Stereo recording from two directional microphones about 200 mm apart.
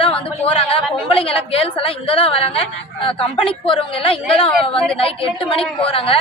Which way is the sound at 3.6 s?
25° left (ahead or behind).